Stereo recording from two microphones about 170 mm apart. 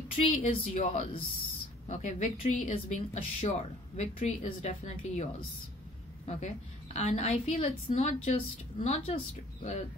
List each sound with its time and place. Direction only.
0.3 s a woman's voice: 45° left (ahead or behind)
6.2 s a woman's voice: 40° left (ahead or behind)